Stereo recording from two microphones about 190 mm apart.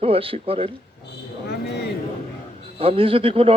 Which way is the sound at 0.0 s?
30° right (ahead or behind).